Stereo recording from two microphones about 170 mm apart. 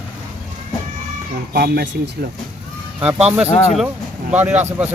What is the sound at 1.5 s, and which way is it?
Speech, 65° right (ahead or behind).